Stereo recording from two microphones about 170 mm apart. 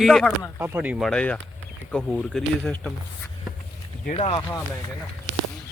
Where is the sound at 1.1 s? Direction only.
5° left (ahead or behind).